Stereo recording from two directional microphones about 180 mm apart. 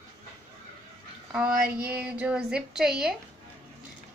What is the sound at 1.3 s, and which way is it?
A woman's voice, 5° right (ahead or behind).